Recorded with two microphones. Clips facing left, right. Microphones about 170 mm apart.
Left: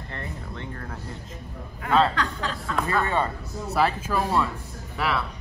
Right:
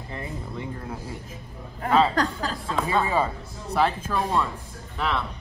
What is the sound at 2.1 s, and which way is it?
Speech, 35° right (ahead or behind).